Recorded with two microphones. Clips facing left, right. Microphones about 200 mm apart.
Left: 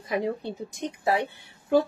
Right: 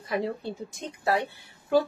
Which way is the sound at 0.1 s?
15° left (ahead or behind).